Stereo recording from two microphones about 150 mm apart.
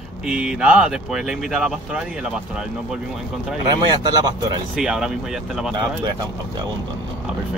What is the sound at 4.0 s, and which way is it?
Speech, 25° right (ahead or behind).